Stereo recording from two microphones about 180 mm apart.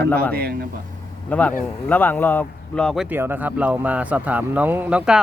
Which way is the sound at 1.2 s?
10° left (ahead or behind).